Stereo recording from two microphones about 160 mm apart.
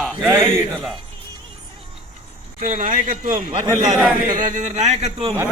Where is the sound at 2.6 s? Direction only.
55° right (ahead or behind).